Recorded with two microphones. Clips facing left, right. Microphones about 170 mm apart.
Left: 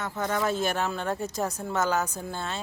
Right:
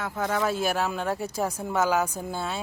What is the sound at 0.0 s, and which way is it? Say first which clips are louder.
Speech: right 1 dB; 10° right (ahead or behind).